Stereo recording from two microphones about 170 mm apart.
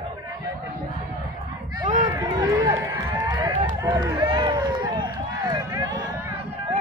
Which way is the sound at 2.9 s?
25° right (ahead or behind).